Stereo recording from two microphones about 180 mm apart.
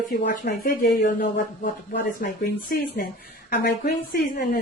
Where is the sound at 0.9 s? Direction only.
60° left (ahead or behind).